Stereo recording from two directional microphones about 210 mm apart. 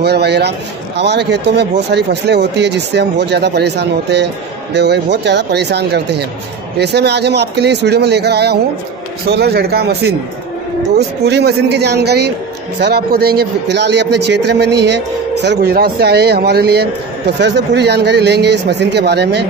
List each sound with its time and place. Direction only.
0.0 s speech: 50° right (ahead or behind)